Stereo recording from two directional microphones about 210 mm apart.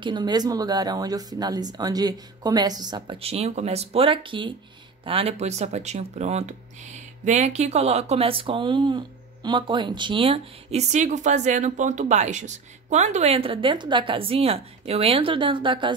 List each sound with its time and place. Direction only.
0.0 s speech: 20° right (ahead or behind)